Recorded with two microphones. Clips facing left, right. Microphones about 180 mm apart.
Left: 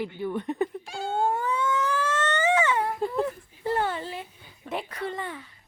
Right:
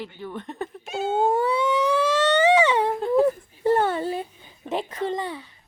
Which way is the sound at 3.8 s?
45° right (ahead or behind).